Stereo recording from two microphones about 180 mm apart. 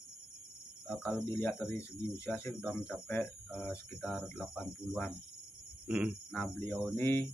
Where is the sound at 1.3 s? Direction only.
10° left (ahead or behind).